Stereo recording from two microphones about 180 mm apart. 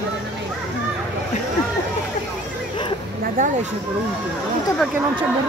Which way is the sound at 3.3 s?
45° right (ahead or behind).